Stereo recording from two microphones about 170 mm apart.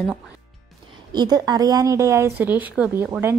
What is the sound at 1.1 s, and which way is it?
Speech, 25° right (ahead or behind).